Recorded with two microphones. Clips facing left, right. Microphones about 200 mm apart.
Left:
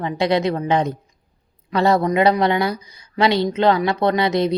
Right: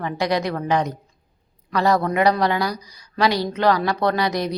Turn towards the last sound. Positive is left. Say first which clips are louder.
# left 4 dB
turn(degrees=25)  # may be behind; listen again after turning